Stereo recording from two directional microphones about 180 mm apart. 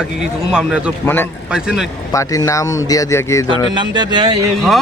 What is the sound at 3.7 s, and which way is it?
Speech, 25° right (ahead or behind).